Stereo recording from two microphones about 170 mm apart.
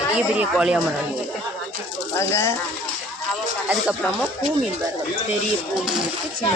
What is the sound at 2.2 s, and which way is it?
Speech, 15° left (ahead or behind).